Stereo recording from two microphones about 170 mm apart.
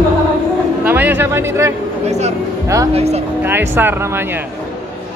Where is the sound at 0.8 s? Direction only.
10° right (ahead or behind).